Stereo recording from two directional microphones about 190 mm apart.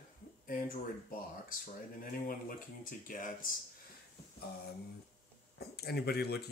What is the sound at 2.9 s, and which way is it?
Speech, 45° left (ahead or behind).